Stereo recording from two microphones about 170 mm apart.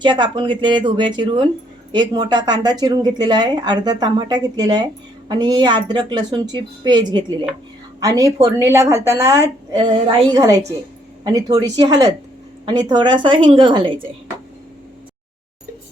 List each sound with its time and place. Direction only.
0.0 s speech: 25° right (ahead or behind)